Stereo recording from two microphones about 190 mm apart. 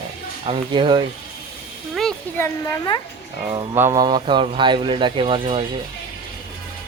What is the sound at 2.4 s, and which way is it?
Speech, 15° left (ahead or behind).